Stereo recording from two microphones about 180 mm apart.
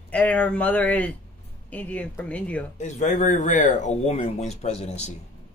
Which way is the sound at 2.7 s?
40° left (ahead or behind).